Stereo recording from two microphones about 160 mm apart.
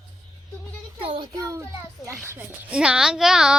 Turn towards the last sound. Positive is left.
turn(degrees=-5)  # may be behind; listen again after turning